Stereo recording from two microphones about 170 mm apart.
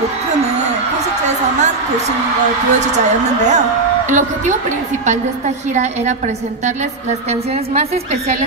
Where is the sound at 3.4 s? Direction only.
45° right (ahead or behind).